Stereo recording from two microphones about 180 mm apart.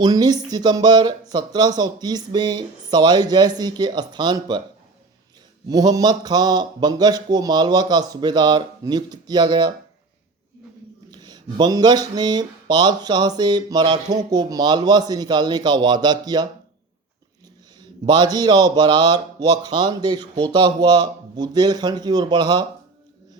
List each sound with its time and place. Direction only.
0.0 s speech: 20° right (ahead or behind)
5.6 s speech: 20° right (ahead or behind)
11.1 s speech: 25° right (ahead or behind)
18.0 s speech: 25° right (ahead or behind)